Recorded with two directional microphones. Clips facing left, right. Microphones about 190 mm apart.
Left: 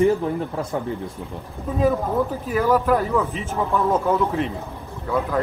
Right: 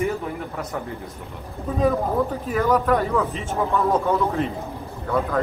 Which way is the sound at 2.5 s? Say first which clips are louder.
Left 1 dB; 5° left (ahead or behind).